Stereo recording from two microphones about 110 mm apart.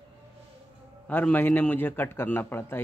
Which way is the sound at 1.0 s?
15° left (ahead or behind).